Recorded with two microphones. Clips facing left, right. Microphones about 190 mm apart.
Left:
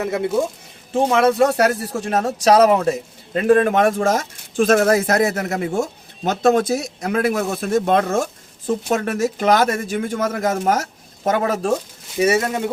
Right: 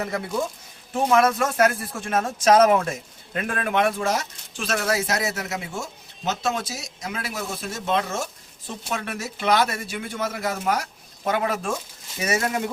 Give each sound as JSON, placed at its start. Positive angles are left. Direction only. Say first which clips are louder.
{"t": 0.0, "sound": "speech", "louder": "left 7 dB", "side_deg": 25}
{"t": 12.2, "sound": "speech", "louder": "left 7 dB", "side_deg": 30}